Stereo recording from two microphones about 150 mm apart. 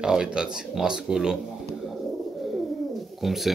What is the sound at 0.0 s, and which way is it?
Speech, 5° right (ahead or behind).